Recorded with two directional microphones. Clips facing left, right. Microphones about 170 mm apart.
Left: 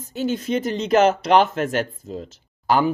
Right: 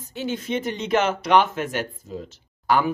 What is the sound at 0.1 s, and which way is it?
Speech, 40° left (ahead or behind).